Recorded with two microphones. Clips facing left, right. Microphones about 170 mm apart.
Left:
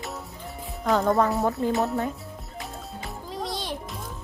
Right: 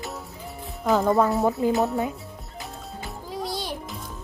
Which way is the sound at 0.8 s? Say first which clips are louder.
Right 1 dB; 5° right (ahead or behind).